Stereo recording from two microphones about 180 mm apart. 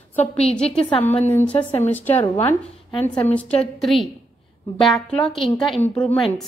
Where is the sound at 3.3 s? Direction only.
5° left (ahead or behind).